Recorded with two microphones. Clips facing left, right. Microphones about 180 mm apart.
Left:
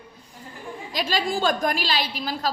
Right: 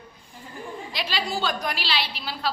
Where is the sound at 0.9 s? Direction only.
45° left (ahead or behind).